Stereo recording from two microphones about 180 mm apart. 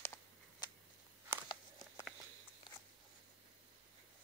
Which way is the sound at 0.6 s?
20° left (ahead or behind).